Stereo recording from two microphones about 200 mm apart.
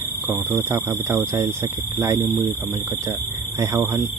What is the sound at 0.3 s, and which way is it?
Speech, 10° right (ahead or behind).